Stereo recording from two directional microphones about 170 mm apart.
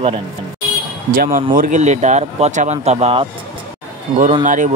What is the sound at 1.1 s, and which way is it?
Speech, 55° right (ahead or behind).